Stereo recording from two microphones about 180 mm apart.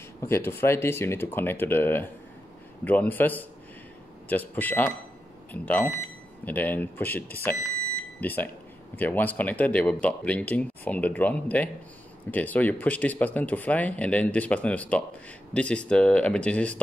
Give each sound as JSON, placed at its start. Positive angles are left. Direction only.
{"t": 0.2, "sound": "speech", "side_deg": 15}